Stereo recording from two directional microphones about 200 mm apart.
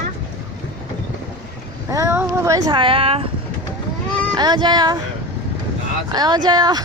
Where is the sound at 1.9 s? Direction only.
15° right (ahead or behind).